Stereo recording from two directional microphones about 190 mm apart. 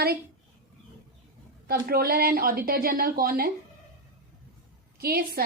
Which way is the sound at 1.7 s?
50° right (ahead or behind).